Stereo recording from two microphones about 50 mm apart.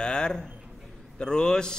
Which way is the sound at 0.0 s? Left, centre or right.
Centre.